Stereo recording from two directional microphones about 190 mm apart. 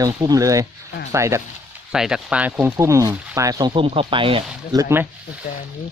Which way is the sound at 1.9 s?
5° right (ahead or behind).